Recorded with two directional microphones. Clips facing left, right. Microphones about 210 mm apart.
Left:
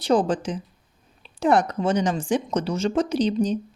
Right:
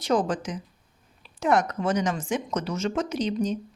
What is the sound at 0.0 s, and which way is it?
Speech, 30° left (ahead or behind).